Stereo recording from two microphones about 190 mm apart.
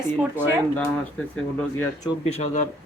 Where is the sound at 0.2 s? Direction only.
10° right (ahead or behind).